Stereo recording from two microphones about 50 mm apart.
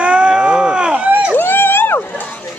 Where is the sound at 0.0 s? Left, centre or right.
Right.